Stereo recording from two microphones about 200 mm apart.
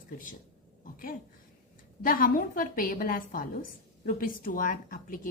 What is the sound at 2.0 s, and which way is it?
A woman's voice, 45° left (ahead or behind).